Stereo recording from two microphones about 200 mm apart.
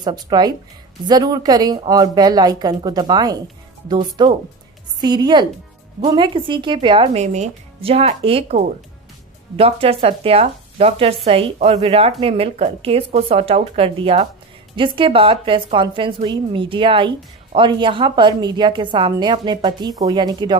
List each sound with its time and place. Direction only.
0.0 s a woman's voice: 20° right (ahead or behind)